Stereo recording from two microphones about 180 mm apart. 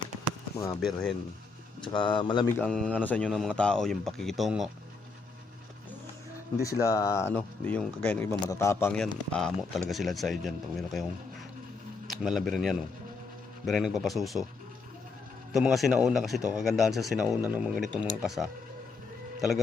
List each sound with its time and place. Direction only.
0.8 s a man's voice: centre (ahead or behind)
1.8 s speech: 25° left (ahead or behind)
2.6 s a man's voice: 5° left (ahead or behind)
6.6 s a man's voice: 15° left (ahead or behind); by 11.0 s centre (ahead or behind)
12.0 s a man's voice: centre (ahead or behind)
15.5 s a man's voice: centre (ahead or behind)